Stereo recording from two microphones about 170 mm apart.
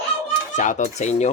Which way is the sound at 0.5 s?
45° left (ahead or behind).